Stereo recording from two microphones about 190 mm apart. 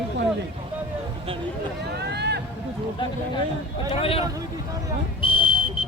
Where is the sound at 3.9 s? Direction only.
30° left (ahead or behind).